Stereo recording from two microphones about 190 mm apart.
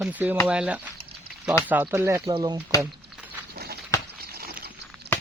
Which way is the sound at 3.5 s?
55° right (ahead or behind).